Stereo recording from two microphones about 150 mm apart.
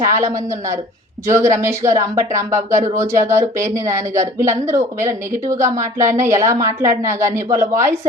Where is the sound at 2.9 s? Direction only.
20° right (ahead or behind).